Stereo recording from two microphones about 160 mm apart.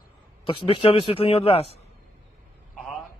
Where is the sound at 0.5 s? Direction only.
35° left (ahead or behind).